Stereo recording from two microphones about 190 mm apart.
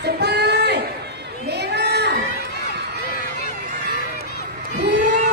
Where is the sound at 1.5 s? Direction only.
60° right (ahead or behind).